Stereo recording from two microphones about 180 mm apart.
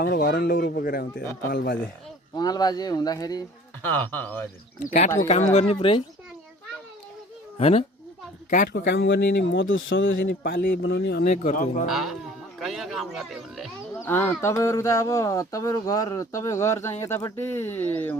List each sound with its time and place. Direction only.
0.0 s speech: 55° left (ahead or behind)
2.3 s speech: 20° left (ahead or behind)
3.8 s speech: 10° left (ahead or behind)
5.3 s speech: 35° left (ahead or behind)
7.6 s speech: 35° left (ahead or behind)
8.4 s speech: 45° left (ahead or behind)
8.9 s speech: 80° left; by 11.3 s 60° left (ahead or behind)
11.4 s speech: 45° left (ahead or behind)
11.9 s speech: centre (ahead or behind)
12.5 s a sound: centre (ahead or behind)
14.0 s speech: 10° left (ahead or behind)